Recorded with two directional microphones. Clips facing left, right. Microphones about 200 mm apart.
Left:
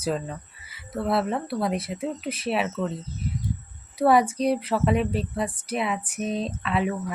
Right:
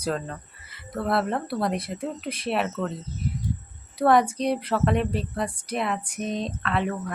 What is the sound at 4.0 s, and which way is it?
Speech, 5° left (ahead or behind).